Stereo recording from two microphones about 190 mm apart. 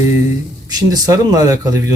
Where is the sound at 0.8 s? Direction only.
20° right (ahead or behind).